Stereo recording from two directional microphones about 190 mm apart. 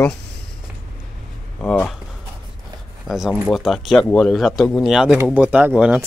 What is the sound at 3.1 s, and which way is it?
Speech, centre (ahead or behind).